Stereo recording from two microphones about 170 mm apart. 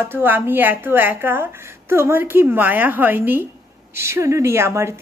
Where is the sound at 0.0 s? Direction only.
10° right (ahead or behind).